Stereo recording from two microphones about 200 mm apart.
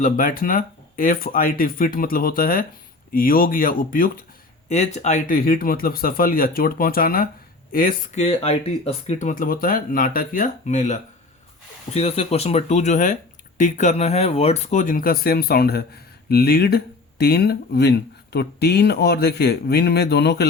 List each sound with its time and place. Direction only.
0.0 s speech: 45° left (ahead or behind)